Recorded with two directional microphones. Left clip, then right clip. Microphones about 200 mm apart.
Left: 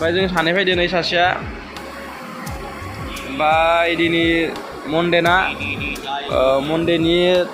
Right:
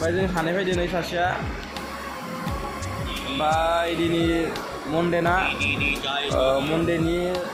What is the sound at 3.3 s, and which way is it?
Speech, 10° left (ahead or behind).